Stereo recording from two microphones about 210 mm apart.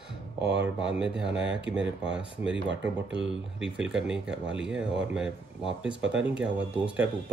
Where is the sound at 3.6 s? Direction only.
5° right (ahead or behind).